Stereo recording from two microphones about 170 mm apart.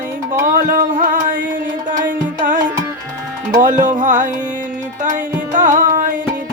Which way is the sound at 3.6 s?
50° right (ahead or behind).